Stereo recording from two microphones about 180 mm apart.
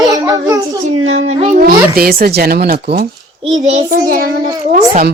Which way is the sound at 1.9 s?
55° right (ahead or behind).